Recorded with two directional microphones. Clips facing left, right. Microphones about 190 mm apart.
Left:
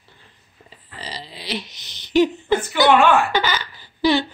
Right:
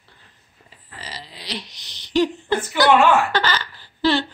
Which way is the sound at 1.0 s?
30° left (ahead or behind).